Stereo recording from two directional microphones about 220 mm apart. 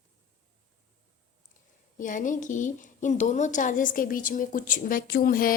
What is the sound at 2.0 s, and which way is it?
A woman's voice, 35° left (ahead or behind).